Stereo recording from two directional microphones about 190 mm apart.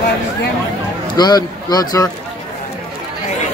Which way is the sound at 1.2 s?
20° left (ahead or behind).